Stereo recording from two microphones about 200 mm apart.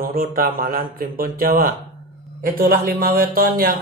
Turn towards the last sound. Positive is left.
turn(degrees=-50)  # may be behind; listen again after turning